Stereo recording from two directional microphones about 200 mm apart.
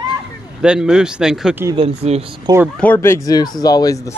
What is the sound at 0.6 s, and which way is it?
Speech, 5° right (ahead or behind).